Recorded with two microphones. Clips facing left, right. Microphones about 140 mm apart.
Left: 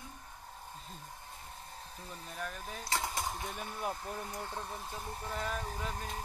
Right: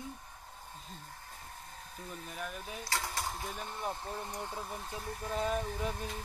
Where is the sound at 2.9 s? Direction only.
20° left (ahead or behind).